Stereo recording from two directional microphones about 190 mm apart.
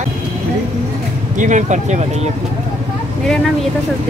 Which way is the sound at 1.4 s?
40° right (ahead or behind).